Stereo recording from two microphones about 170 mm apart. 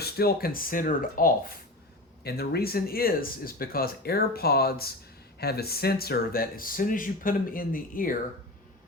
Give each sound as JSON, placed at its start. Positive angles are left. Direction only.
{"t": 0.0, "sound": "speech", "side_deg": 65}
{"t": 2.2, "sound": "speech", "side_deg": 70}